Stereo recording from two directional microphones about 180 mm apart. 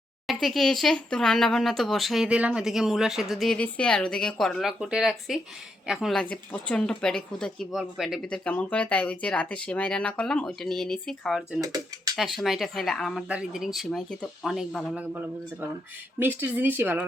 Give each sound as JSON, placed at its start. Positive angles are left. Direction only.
{"t": 0.3, "sound": "speech", "side_deg": 0}
{"t": 11.6, "sound": "speech", "side_deg": -20}
{"t": 12.1, "sound": "speech", "side_deg": 0}
{"t": 16.1, "sound": "speech", "side_deg": -10}